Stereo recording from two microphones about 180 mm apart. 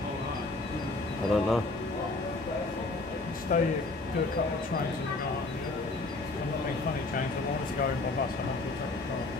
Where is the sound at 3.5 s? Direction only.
50° left (ahead or behind).